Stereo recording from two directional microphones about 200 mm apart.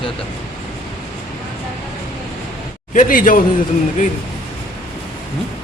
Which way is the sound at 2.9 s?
45° left (ahead or behind).